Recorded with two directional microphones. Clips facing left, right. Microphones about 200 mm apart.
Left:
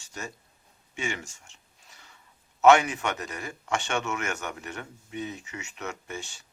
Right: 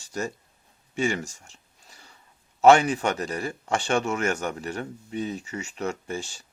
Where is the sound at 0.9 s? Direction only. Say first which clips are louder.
Right 8 dB; 35° right (ahead or behind).